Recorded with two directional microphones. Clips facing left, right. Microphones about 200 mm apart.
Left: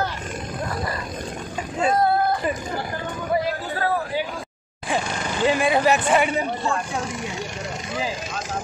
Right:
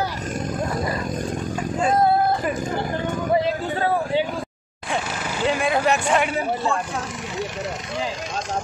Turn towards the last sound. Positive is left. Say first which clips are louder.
# right 1 dB
turn(degrees=-5)  # may be behind; listen again after turning